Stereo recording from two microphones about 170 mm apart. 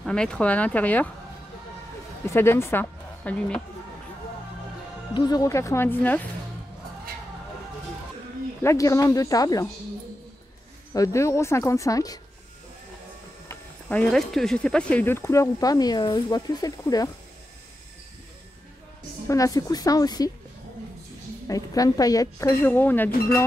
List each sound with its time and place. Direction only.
0.0 s speech: 5° left (ahead or behind)
2.2 s speech: 15° left (ahead or behind)
5.1 s speech: 25° left (ahead or behind)
8.6 s speech: 20° left (ahead or behind)
10.9 s speech: 15° left (ahead or behind)
13.5 s speech: 10° left (ahead or behind)
19.2 s speech: 20° left (ahead or behind)
21.5 s speech: 20° left (ahead or behind)